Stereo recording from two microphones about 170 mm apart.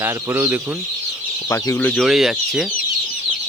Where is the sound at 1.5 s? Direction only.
15° left (ahead or behind).